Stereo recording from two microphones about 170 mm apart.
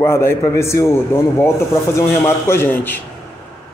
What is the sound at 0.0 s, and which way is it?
Speech, 15° left (ahead or behind).